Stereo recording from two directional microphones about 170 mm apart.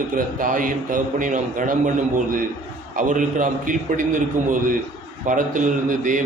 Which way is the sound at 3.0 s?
50° right (ahead or behind).